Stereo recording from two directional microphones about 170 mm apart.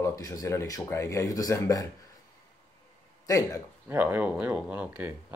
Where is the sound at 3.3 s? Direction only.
20° left (ahead or behind).